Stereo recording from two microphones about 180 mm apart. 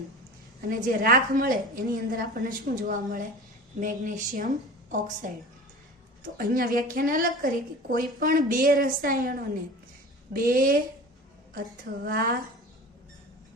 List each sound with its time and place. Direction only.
0.7 s a woman's voice: 50° right (ahead or behind)
6.3 s a woman's voice: 50° right (ahead or behind)
10.3 s a woman's voice: 50° right (ahead or behind)
12.0 s speech: 55° right (ahead or behind)